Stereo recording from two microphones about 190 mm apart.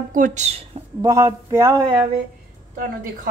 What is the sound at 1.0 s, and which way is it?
Speech, 20° right (ahead or behind).